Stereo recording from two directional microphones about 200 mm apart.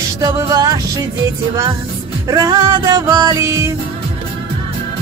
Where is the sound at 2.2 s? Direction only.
15° right (ahead or behind).